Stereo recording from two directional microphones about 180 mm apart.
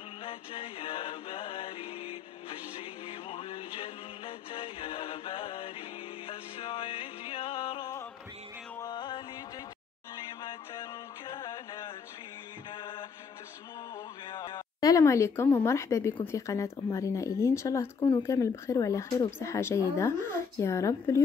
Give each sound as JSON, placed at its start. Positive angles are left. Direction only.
{"t": 0.2, "sound": "music", "side_deg": 30}
{"t": 10.8, "sound": "music", "side_deg": 25}
{"t": 14.3, "sound": "speech", "side_deg": 25}